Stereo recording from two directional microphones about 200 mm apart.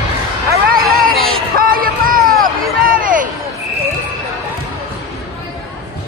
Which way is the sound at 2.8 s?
45° right (ahead or behind).